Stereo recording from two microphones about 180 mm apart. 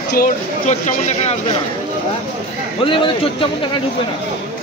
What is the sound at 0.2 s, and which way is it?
Speech, 40° left (ahead or behind).